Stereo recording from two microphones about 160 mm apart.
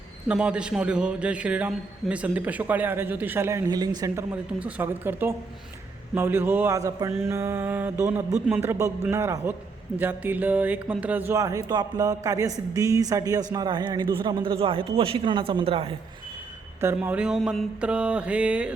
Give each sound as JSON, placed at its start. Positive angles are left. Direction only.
{"t": 0.3, "sound": "a man's voice", "side_deg": -5}
{"t": 16.8, "sound": "a man's voice", "side_deg": -10}